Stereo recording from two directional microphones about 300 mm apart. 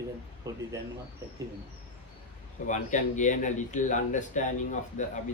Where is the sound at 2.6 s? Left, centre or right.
Left.